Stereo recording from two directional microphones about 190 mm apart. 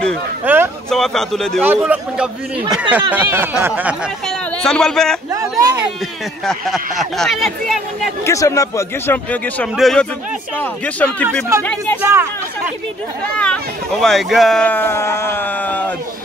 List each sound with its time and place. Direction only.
0.5 s a sound: 10° right (ahead or behind)
0.8 s speech: 5° left (ahead or behind)
1.6 s speech: 10° right (ahead or behind)
4.3 s speech: 5° left (ahead or behind)
5.3 s speech: 20° right (ahead or behind)
6.4 s speech: centre (ahead or behind)
8.3 s speech: 15° left (ahead or behind)
12.0 s speech: 10° right (ahead or behind)
13.4 s speech: 5° left (ahead or behind)